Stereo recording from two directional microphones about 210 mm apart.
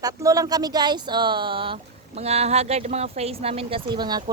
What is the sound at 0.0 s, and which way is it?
Speech, 15° right (ahead or behind).